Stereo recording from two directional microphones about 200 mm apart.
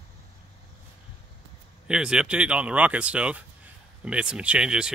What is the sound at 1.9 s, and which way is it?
Speech, 5° right (ahead or behind).